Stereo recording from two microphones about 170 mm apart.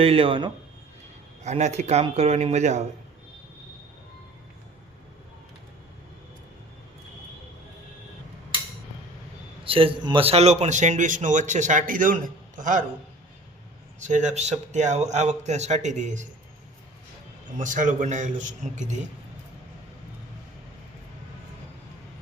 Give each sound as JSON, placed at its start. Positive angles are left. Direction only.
{"t": 0.0, "sound": "speech", "side_deg": -35}
{"t": 1.5, "sound": "speech", "side_deg": -40}
{"t": 9.6, "sound": "a man's voice", "side_deg": -30}
{"t": 14.0, "sound": "a man's voice", "side_deg": -45}
{"t": 17.6, "sound": "a man's voice", "side_deg": -50}